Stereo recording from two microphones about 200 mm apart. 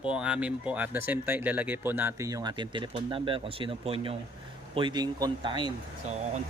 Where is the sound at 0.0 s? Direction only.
5° right (ahead or behind).